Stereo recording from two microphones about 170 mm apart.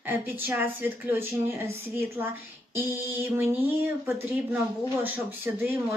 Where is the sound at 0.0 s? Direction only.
10° right (ahead or behind).